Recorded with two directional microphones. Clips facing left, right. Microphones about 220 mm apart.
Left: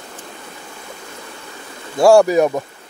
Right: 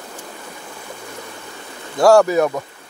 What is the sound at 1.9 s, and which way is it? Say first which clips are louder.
Speech: left 2 dB; 10° left (ahead or behind).